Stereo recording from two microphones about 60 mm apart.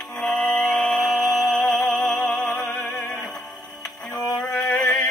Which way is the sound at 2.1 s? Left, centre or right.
Centre.